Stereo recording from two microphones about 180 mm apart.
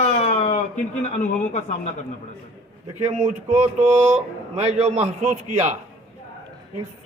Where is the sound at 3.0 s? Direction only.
40° right (ahead or behind).